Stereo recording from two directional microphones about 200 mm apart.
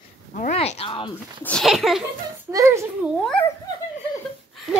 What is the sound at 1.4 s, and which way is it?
Speech, 5° left (ahead or behind).